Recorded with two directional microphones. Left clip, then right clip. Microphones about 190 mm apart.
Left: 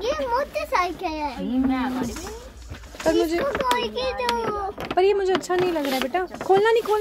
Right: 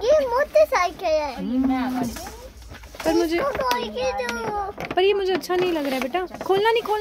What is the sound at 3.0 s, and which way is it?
Speech, 20° right (ahead or behind).